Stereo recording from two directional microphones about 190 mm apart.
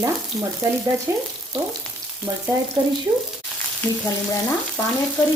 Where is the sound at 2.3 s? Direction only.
20° right (ahead or behind).